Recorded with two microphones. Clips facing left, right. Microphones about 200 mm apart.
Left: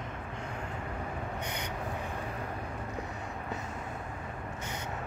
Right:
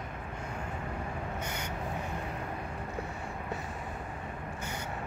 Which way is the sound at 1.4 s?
15° left (ahead or behind).